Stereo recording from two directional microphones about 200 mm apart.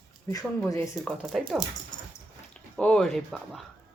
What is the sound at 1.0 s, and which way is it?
Speech, centre (ahead or behind).